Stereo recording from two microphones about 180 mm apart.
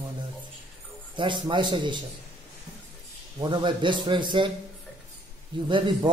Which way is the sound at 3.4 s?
25° right (ahead or behind).